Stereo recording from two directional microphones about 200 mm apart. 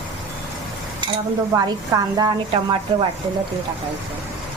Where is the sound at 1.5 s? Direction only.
20° right (ahead or behind).